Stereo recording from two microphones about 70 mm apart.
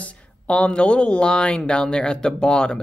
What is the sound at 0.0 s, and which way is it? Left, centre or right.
Speech, centre.